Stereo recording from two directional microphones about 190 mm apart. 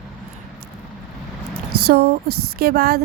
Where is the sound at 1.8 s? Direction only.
55° right (ahead or behind).